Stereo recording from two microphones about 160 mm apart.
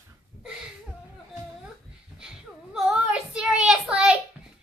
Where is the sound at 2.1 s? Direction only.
5° right (ahead or behind).